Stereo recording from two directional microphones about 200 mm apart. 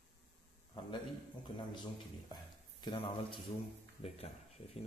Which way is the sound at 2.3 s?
25° left (ahead or behind).